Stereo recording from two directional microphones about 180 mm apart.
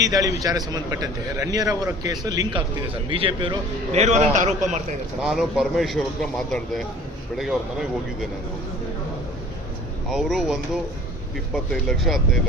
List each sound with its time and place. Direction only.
0.0 s a man's voice: 20° right (ahead or behind); by 4.8 s 40° right (ahead or behind)
5.2 s a man's voice: centre (ahead or behind)
10.1 s a man's voice: centre (ahead or behind)